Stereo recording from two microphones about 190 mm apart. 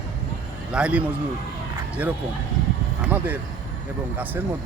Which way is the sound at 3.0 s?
10° right (ahead or behind).